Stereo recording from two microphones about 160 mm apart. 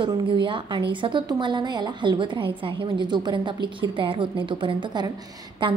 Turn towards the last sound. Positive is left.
turn(degrees=-30)  # may be behind; listen again after turning